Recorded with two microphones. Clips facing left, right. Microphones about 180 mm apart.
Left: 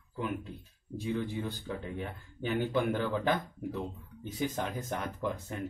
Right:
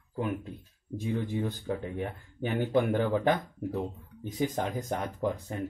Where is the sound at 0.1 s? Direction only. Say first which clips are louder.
Right 3 dB; 50° right (ahead or behind).